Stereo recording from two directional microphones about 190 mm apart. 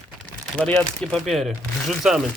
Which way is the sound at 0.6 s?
5° left (ahead or behind).